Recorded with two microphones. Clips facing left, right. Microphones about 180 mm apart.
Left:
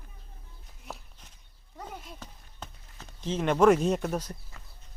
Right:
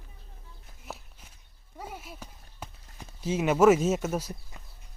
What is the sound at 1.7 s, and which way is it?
Horse, 5° right (ahead or behind).